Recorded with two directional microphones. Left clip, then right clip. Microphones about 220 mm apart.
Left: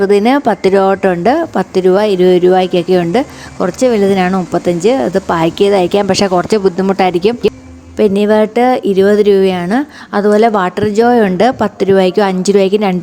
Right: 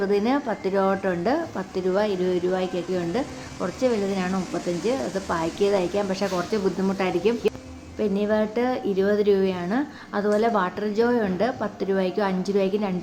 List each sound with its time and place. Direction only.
0.0 s a woman's voice: 40° left (ahead or behind)